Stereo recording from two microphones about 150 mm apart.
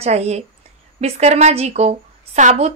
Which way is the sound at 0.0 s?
45° right (ahead or behind).